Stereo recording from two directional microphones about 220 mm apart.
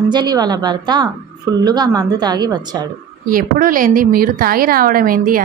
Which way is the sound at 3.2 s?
40° right (ahead or behind).